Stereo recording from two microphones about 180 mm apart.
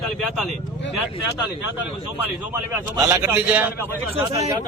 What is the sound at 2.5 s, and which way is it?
A man's voice, 15° right (ahead or behind).